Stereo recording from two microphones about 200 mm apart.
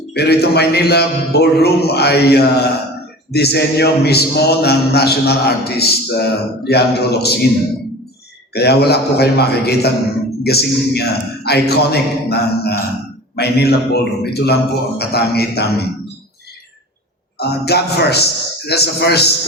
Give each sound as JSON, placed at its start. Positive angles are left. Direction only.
{"t": 0.1, "sound": "a man's voice", "side_deg": 55}
{"t": 8.5, "sound": "a man's voice", "side_deg": 55}
{"t": 17.3, "sound": "a man's voice", "side_deg": 55}